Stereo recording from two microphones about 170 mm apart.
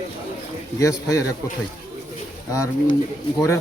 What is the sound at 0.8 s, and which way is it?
Speech, 20° left (ahead or behind).